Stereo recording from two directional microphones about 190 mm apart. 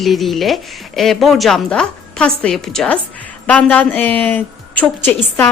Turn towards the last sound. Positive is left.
turn(degrees=10)  # may be behind; listen again after turning